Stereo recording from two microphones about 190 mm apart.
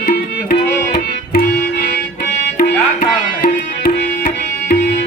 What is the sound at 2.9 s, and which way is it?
Music, 55° left (ahead or behind).